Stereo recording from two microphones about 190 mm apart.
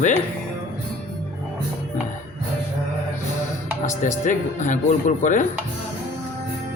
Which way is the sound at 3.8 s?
40° left (ahead or behind).